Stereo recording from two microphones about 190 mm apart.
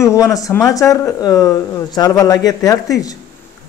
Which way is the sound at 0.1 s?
15° left (ahead or behind).